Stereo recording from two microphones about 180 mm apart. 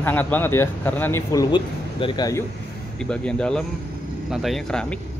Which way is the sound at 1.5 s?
25° left (ahead or behind).